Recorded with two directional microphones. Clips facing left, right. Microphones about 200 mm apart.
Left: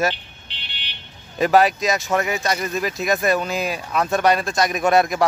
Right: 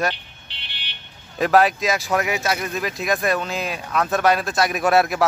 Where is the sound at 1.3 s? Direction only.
Centre (ahead or behind).